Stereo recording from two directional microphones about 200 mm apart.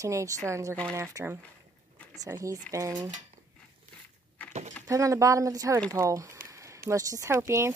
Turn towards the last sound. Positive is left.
turn(degrees=-15)  # may be behind; listen again after turning